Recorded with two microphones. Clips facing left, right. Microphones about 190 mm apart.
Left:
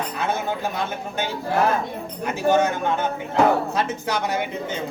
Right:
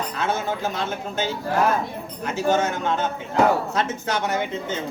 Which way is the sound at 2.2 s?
15° left (ahead or behind).